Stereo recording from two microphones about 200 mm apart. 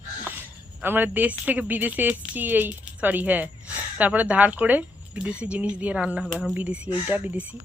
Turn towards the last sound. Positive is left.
turn(degrees=-10)  # may be behind; listen again after turning